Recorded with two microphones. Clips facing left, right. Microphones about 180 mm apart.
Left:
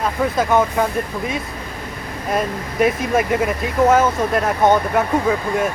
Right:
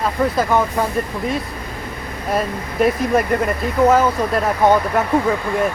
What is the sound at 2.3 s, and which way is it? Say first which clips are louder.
Speech: even; centre (ahead or behind).